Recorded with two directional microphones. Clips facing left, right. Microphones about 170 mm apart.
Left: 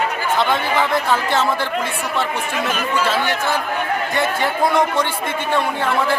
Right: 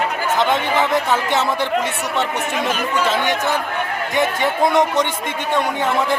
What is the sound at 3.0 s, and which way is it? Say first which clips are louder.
Speech: right 2 dB; 20° right (ahead or behind).